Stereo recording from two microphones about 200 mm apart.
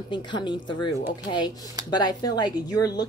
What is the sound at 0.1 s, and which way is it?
A woman's voice, 25° left (ahead or behind).